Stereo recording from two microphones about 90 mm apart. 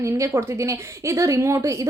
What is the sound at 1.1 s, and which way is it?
Speech, 35° right (ahead or behind).